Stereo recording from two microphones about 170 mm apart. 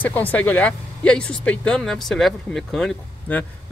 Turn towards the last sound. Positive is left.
turn(degrees=5)  # may be behind; listen again after turning